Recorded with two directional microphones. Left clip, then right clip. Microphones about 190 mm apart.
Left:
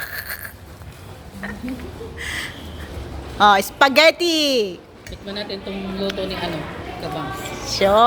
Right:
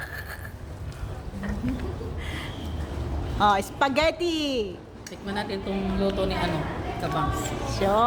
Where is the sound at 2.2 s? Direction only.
25° left (ahead or behind).